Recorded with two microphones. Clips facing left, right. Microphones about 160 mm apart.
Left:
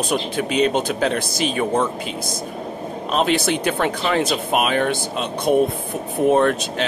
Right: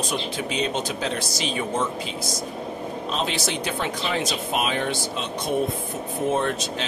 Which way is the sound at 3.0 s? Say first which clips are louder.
Left 9 dB; 60° left (ahead or behind).